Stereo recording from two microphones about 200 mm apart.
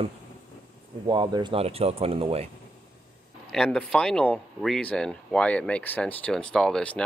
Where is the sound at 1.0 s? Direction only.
20° right (ahead or behind).